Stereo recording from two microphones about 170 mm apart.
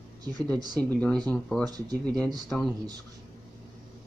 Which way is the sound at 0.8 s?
10° left (ahead or behind).